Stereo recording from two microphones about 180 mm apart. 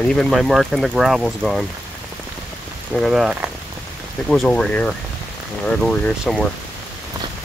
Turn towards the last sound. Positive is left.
turn(degrees=5)  # may be behind; listen again after turning